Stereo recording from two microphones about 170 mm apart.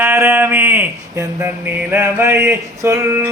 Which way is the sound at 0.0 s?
15° right (ahead or behind).